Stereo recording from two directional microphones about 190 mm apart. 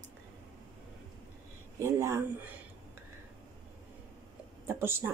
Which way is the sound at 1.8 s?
15° right (ahead or behind).